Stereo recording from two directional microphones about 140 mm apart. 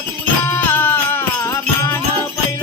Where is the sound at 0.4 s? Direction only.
15° left (ahead or behind).